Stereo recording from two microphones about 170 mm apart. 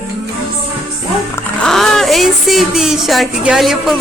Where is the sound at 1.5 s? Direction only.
Centre (ahead or behind).